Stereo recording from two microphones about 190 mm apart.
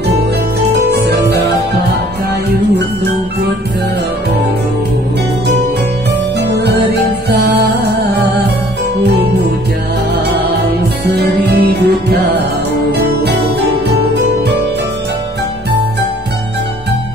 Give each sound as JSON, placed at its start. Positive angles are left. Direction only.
{"t": 0.6, "sound": "music", "side_deg": -60}
{"t": 6.4, "sound": "music", "side_deg": -60}
{"t": 11.1, "sound": "music", "side_deg": -60}